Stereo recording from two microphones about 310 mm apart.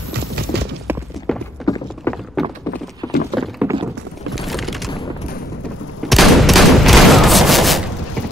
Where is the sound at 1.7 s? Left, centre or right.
Centre.